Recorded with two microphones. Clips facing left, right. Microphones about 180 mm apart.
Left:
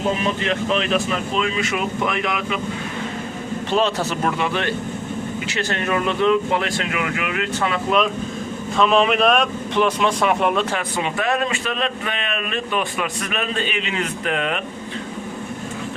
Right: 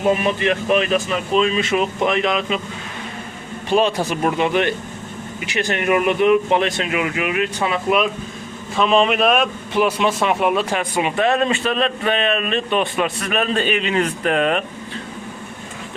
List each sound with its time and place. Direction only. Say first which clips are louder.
0.4 s speech: right 5 dB; 10° right (ahead or behind)
1.4 s speech: right 7 dB; 25° right (ahead or behind)
3.7 s speech: right 3 dB; 15° right (ahead or behind)
11.2 s a man's voice: right 5 dB; 30° right (ahead or behind)
13.3 s a man's voice: right 6 dB; 45° right (ahead or behind)